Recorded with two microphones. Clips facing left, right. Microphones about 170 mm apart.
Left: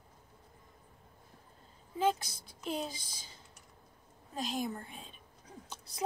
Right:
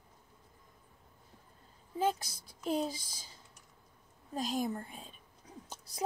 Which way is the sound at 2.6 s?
40° right (ahead or behind).